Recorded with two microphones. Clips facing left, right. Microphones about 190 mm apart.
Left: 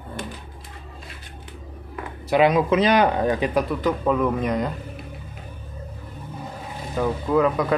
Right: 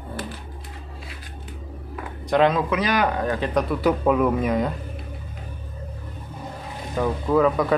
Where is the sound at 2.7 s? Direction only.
25° left (ahead or behind).